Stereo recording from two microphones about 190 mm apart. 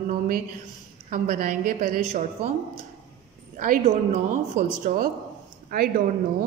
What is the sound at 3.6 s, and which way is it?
A woman's voice, 45° right (ahead or behind).